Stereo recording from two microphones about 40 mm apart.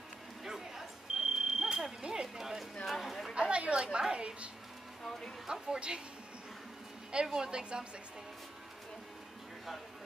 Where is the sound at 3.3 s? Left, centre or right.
Right.